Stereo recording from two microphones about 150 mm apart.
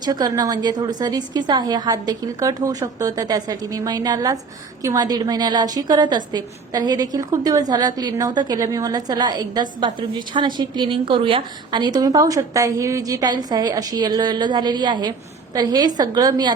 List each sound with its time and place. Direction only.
0.0 s a woman's voice: 25° right (ahead or behind)